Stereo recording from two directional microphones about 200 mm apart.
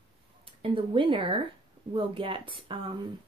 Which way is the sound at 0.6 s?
25° right (ahead or behind).